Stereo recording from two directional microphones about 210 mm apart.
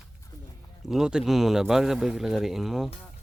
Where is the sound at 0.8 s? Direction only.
Centre (ahead or behind).